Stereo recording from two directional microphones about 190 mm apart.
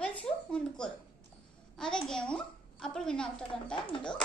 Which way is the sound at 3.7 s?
25° left (ahead or behind).